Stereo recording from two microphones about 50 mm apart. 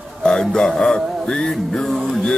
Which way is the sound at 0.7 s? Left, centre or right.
Centre.